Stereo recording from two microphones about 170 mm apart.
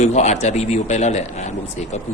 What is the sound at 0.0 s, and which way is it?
Speech, 40° left (ahead or behind).